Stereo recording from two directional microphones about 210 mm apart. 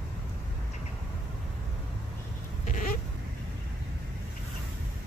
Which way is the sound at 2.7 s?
40° left (ahead or behind).